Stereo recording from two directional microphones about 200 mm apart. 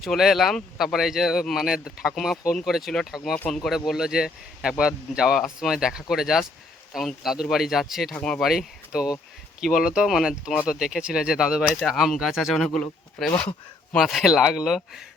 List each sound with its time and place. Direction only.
0.0 s speech: centre (ahead or behind)